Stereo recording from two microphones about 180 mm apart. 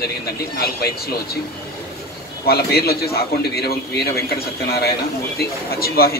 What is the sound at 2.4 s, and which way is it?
A man's voice, 60° left (ahead or behind).